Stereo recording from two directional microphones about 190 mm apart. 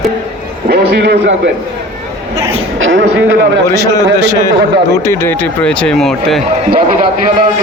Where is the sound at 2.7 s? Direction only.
90° right.